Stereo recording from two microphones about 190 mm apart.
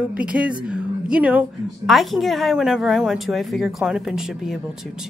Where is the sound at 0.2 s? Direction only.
5° right (ahead or behind).